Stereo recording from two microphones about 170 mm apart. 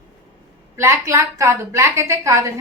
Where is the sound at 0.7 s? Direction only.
15° right (ahead or behind).